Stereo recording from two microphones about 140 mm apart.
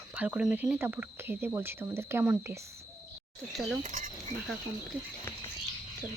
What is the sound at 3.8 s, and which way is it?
Speech, 70° right (ahead or behind).